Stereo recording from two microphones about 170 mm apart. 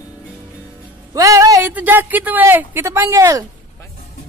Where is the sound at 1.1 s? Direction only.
20° right (ahead or behind).